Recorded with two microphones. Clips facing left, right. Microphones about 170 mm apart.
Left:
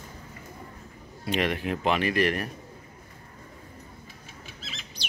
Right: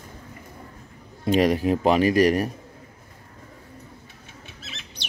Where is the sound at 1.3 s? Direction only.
35° right (ahead or behind).